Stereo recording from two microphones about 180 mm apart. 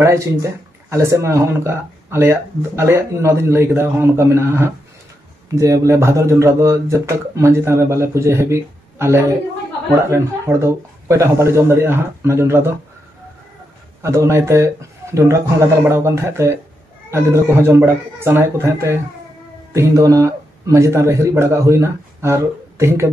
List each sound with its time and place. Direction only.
0.0 s speech: 15° right (ahead or behind)
14.0 s a man's voice: 15° right (ahead or behind)